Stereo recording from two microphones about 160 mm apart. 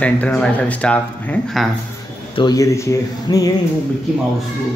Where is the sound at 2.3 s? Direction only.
25° left (ahead or behind).